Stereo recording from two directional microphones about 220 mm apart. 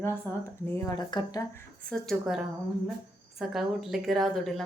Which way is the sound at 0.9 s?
20° left (ahead or behind).